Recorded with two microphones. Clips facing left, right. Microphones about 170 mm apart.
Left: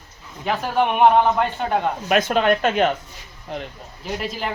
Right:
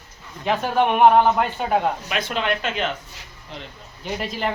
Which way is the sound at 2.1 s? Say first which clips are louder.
Left 7 dB; 45° left (ahead or behind).